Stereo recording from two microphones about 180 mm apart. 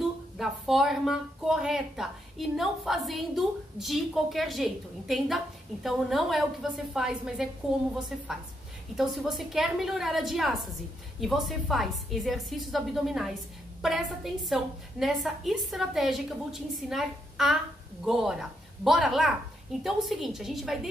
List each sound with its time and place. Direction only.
0.4 s speech: centre (ahead or behind)
8.9 s speech: centre (ahead or behind)